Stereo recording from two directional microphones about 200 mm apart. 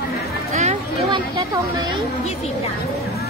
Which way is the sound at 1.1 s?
20° right (ahead or behind).